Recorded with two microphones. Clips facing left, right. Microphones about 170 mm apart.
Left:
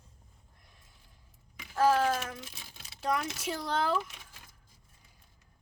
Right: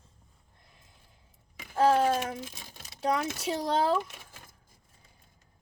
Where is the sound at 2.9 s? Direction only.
25° right (ahead or behind).